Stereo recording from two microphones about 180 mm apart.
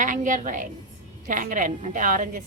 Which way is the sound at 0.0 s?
45° right (ahead or behind).